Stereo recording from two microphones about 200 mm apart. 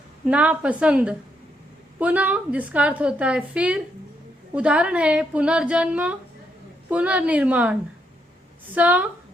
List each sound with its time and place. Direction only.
0.3 s a woman's voice: 5° right (ahead or behind)